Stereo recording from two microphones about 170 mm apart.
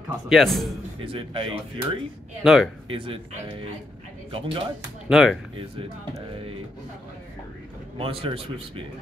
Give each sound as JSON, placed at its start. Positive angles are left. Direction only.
{"t": 0.3, "sound": "speech", "side_deg": 0}
{"t": 1.0, "sound": "speech", "side_deg": -30}
{"t": 2.4, "sound": "speech", "side_deg": 0}
{"t": 2.9, "sound": "speech", "side_deg": -30}
{"t": 5.1, "sound": "speech", "side_deg": 0}
{"t": 8.0, "sound": "speech", "side_deg": -35}